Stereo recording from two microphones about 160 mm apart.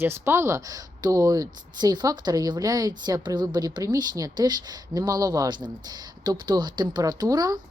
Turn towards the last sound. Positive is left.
turn(degrees=-25)  # may be behind; listen again after turning